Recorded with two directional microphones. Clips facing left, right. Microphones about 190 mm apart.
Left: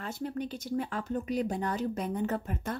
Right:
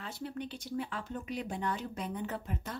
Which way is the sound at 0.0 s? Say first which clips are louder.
Left 5 dB; 45° left (ahead or behind).